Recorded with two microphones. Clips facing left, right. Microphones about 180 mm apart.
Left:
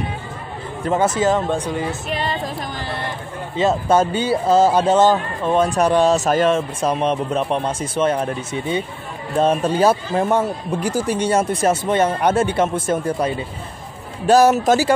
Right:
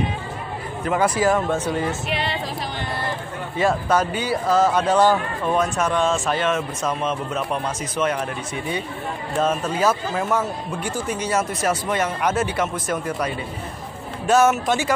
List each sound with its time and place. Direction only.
0.8 s speech: 25° left (ahead or behind)
2.0 s a sound: 45° left (ahead or behind)
3.5 s speech: 25° left (ahead or behind)